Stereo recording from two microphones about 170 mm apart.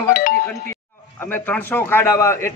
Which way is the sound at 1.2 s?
10° left (ahead or behind).